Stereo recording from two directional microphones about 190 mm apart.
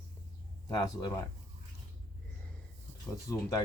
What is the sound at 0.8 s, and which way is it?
Speech, 20° left (ahead or behind).